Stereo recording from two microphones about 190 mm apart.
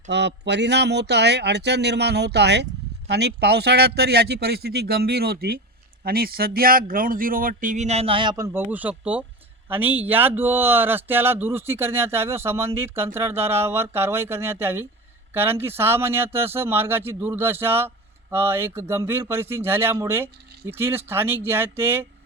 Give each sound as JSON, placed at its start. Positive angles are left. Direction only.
{"t": 0.1, "sound": "speech", "side_deg": -65}